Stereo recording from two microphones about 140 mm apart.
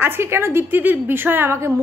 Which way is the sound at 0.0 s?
15° right (ahead or behind).